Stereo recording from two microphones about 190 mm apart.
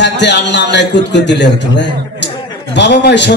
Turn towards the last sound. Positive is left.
turn(degrees=65)  # may be behind; listen again after turning